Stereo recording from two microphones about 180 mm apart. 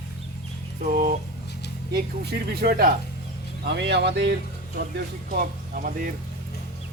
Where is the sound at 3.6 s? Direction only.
70° right (ahead or behind).